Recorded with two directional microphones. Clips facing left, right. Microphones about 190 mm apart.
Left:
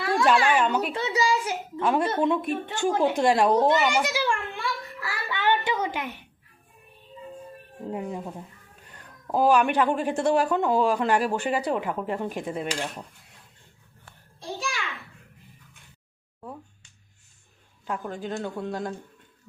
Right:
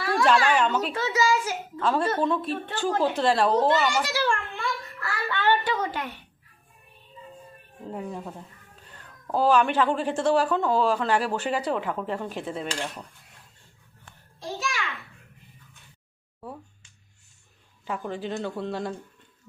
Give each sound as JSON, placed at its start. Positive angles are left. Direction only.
{"t": 0.3, "sound": "speech", "side_deg": 10}
{"t": 4.1, "sound": "a sound", "side_deg": 15}
{"t": 7.9, "sound": "speech", "side_deg": 15}
{"t": 17.8, "sound": "a man's voice", "side_deg": 0}